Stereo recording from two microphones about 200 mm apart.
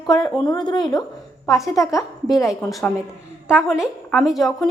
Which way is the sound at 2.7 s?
Centre (ahead or behind).